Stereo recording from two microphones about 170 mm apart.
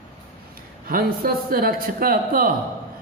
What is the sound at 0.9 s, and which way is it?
Speech, 60° right (ahead or behind).